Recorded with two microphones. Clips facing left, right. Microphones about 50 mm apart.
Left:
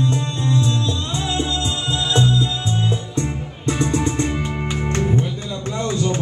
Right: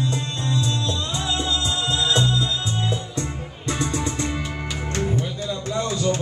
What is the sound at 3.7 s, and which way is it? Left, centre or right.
Music, left.